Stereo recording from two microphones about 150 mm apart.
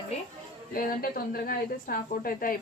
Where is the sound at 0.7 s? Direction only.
75° left (ahead or behind).